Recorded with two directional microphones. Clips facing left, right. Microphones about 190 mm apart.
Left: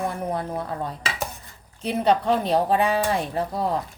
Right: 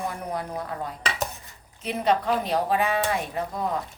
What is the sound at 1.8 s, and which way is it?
A woman's voice, 30° left (ahead or behind).